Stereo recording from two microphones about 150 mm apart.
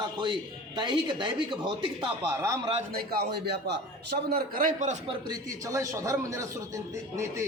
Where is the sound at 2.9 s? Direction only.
90° right; by 4.9 s 60° right (ahead or behind).